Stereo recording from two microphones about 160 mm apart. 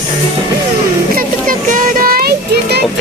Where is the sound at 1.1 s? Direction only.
60° right (ahead or behind).